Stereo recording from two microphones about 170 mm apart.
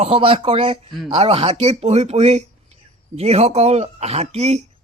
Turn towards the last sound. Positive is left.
turn(degrees=-40)  # may be behind; listen again after turning